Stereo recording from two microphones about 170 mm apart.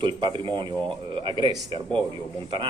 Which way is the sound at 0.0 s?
30° right (ahead or behind).